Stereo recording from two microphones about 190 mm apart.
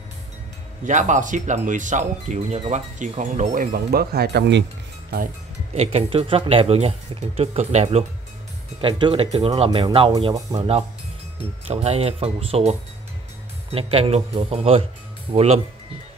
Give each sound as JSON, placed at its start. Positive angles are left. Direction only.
{"t": 0.8, "sound": "speech", "side_deg": -40}
{"t": 5.8, "sound": "speech", "side_deg": -30}